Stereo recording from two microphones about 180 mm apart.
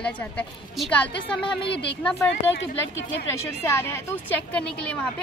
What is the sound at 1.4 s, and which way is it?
Speech, 30° left (ahead or behind).